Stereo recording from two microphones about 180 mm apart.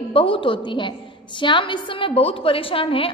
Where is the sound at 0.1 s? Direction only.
30° left (ahead or behind).